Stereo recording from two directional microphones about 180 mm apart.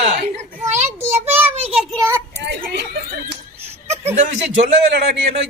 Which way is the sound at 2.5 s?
65° right (ahead or behind).